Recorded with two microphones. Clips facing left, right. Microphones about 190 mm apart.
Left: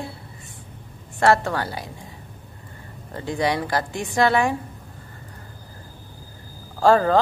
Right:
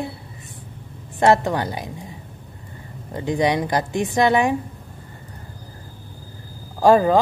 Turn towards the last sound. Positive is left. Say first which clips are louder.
# right 2 dB
turn(degrees=-15)  # may be behind; listen again after turning